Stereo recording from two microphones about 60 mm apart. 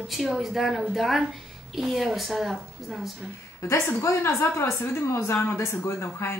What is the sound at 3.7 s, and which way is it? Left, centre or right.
A woman's voice, left.